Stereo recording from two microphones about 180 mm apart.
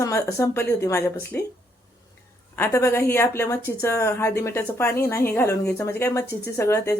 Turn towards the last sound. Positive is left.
turn(degrees=15)  # may be behind; listen again after turning